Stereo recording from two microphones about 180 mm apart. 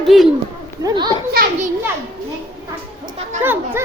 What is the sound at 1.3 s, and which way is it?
Speech, 55° right (ahead or behind).